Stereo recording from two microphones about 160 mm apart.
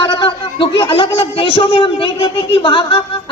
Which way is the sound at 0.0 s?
30° left (ahead or behind).